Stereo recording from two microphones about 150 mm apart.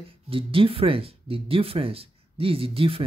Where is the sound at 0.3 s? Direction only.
35° right (ahead or behind).